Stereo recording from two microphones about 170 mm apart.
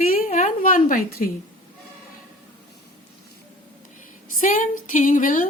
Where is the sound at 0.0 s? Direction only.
55° left (ahead or behind).